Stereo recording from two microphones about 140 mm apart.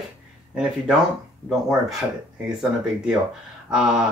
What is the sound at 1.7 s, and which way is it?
Speech, centre (ahead or behind).